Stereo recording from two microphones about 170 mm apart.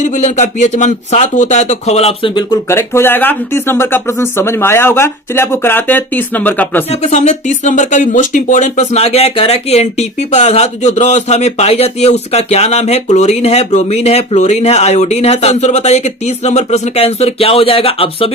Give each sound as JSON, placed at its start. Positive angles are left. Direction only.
{"t": 0.0, "sound": "speech", "side_deg": 45}
{"t": 2.6, "sound": "speech", "side_deg": 15}
{"t": 7.1, "sound": "speech", "side_deg": 40}